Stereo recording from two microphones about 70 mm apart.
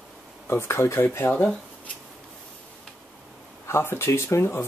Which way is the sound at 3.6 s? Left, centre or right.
Left.